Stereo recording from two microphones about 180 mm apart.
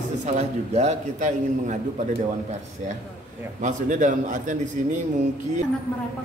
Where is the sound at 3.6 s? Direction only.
45° right (ahead or behind).